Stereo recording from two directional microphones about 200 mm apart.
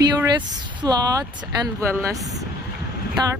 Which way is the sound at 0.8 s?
20° right (ahead or behind).